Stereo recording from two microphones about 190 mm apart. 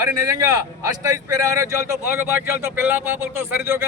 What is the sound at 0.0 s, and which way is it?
A man's voice, 15° right (ahead or behind).